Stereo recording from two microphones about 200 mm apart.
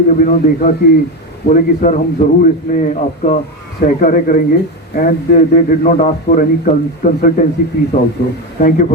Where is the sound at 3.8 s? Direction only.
45° left (ahead or behind).